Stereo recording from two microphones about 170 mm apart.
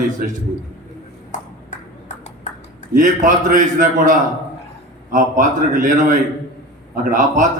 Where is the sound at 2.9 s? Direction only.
50° right (ahead or behind).